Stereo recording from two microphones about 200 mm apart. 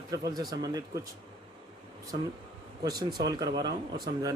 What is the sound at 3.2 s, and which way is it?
Speech, 20° right (ahead or behind).